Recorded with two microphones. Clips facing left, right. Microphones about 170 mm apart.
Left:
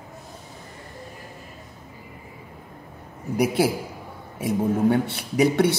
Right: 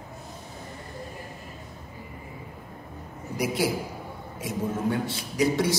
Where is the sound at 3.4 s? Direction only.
60° left (ahead or behind).